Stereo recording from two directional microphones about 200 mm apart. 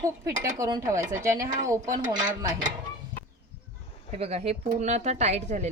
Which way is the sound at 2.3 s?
20° right (ahead or behind).